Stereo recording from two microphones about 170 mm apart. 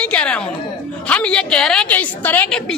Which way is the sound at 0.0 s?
5° left (ahead or behind).